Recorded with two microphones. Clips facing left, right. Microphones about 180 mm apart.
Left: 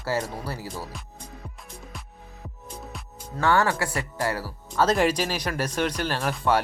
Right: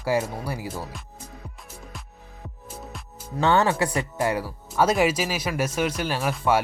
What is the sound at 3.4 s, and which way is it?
Speech, 20° right (ahead or behind).